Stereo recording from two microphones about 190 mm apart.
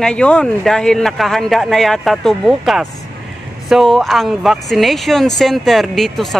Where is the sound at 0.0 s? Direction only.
5° left (ahead or behind).